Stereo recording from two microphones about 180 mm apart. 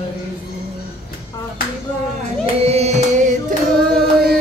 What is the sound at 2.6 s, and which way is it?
Singing, 35° right (ahead or behind).